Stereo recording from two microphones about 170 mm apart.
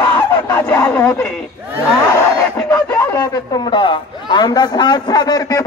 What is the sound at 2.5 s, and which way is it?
A man's voice, 15° left (ahead or behind).